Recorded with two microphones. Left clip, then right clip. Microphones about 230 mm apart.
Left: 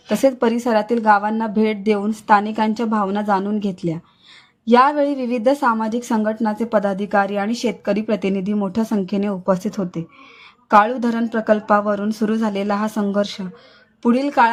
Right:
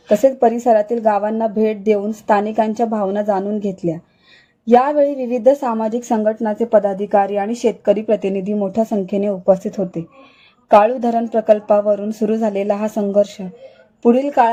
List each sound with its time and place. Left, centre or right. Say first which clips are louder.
0.1 s a woman's voice: right 4 dB; left